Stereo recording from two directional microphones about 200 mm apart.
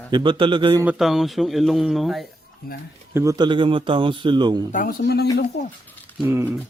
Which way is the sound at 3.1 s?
15° right (ahead or behind).